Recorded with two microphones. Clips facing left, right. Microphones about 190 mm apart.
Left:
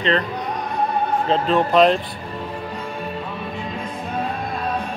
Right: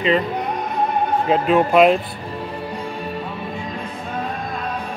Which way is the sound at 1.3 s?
10° right (ahead or behind).